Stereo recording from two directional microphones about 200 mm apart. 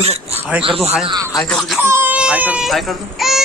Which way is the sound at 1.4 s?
Centre (ahead or behind).